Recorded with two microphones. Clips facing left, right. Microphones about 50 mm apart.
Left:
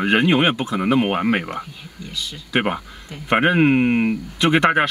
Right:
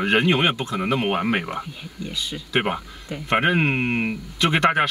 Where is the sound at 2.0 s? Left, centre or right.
Centre.